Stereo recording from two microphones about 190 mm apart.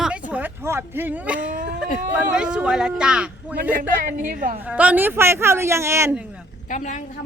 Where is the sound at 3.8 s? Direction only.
45° right (ahead or behind).